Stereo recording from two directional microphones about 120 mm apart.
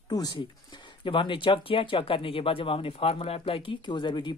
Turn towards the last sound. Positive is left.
turn(degrees=40)  # may be behind; listen again after turning